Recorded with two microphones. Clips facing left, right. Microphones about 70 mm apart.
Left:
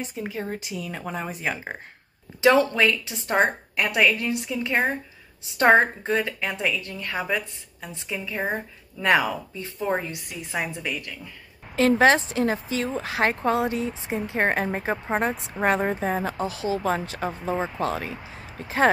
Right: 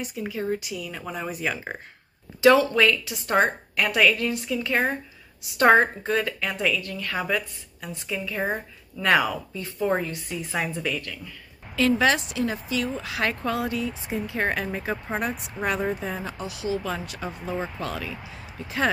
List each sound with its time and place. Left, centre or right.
0.0 s a woman's voice: left
2.7 s a woman's voice: left
11.7 s a woman's voice: left